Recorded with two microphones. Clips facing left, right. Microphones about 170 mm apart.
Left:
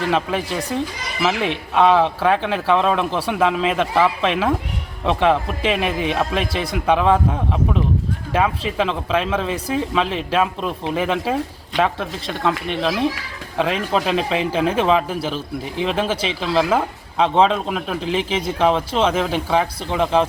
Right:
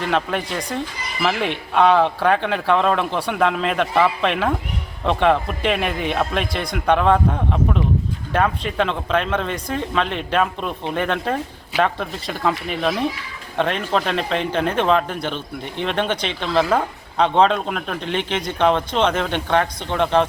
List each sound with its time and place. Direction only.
0.0 s speech: centre (ahead or behind)